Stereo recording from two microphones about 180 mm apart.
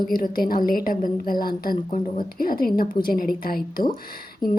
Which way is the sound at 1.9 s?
40° left (ahead or behind).